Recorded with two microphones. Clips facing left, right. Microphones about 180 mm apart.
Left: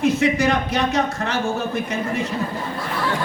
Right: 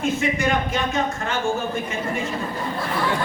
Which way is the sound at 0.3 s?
75° left (ahead or behind).